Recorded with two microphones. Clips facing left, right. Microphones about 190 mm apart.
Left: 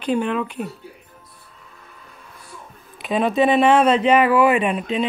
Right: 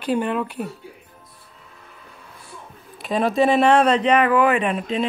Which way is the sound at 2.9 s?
Centre (ahead or behind).